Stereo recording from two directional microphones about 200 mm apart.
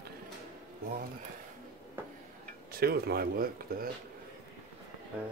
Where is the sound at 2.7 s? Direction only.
50° right (ahead or behind).